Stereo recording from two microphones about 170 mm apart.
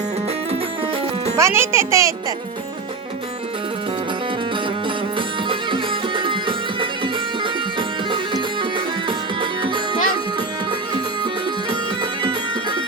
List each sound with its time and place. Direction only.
1.4 s a child's voice: 15° right (ahead or behind)
5.5 s music: 30° right (ahead or behind)
7.8 s music: 30° right (ahead or behind)